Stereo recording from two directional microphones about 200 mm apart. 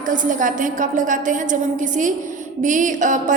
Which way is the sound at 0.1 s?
40° right (ahead or behind).